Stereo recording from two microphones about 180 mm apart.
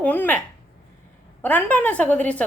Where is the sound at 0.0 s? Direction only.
10° left (ahead or behind).